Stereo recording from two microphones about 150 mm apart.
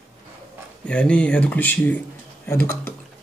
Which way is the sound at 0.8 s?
5° left (ahead or behind).